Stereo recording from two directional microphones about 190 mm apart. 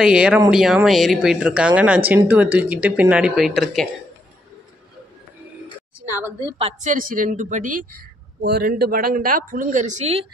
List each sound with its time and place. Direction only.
0.0 s speech: 5° right (ahead or behind)
6.6 s a woman's voice: 40° right (ahead or behind)